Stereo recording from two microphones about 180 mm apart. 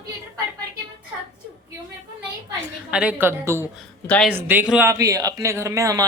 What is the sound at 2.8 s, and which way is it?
Speech, 5° right (ahead or behind).